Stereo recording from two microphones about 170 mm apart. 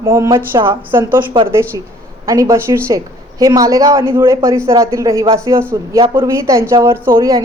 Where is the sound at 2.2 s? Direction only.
20° right (ahead or behind).